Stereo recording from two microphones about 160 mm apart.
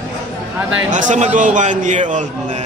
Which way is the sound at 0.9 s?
50° right (ahead or behind).